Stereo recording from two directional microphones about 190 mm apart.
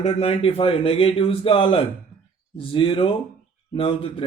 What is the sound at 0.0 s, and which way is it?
Speech, 30° left (ahead or behind).